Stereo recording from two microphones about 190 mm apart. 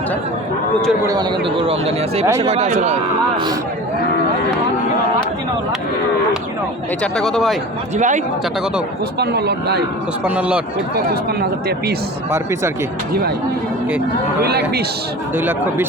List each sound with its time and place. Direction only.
1.0 s speech: 25° right (ahead or behind)
2.2 s speech: 15° right (ahead or behind)
2.5 s speech: 35° right (ahead or behind)
7.0 s speech: 5° left (ahead or behind)
7.9 s speech: 40° right (ahead or behind)
9.1 s speech: 60° right (ahead or behind)
10.2 s speech: 5° right (ahead or behind)
10.9 s speech: 55° right (ahead or behind)
14.4 s speech: 55° right (ahead or behind)